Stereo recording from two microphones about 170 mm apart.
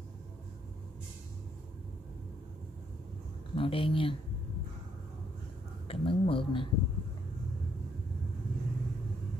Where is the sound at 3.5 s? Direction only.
30° left (ahead or behind).